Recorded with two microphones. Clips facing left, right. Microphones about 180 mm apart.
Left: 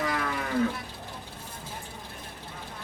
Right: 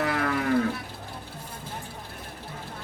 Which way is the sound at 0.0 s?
60° right (ahead or behind).